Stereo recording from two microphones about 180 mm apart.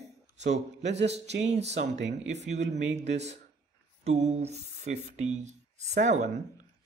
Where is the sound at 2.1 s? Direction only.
40° right (ahead or behind).